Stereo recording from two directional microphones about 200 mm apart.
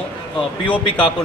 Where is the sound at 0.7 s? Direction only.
5° left (ahead or behind).